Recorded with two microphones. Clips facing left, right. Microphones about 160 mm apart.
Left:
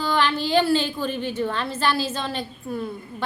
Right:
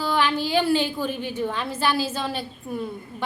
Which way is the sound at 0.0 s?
10° right (ahead or behind).